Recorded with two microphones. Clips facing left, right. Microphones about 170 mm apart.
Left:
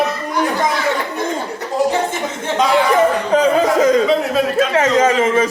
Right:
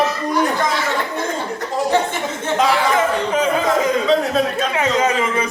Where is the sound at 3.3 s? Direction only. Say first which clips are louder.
Left 4 dB; 35° left (ahead or behind).